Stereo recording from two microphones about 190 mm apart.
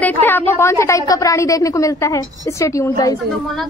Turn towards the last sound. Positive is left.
turn(degrees=15)  # may be behind; listen again after turning